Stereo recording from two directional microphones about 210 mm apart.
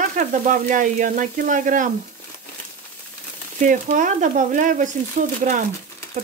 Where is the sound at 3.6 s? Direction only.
35° right (ahead or behind).